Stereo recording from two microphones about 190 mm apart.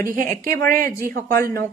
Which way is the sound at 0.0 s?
45° right (ahead or behind).